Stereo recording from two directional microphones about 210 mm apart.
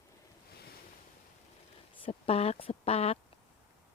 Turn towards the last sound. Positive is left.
turn(degrees=30)  # may be behind; listen again after turning